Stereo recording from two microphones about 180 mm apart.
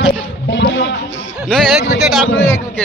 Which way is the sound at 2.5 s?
15° left (ahead or behind).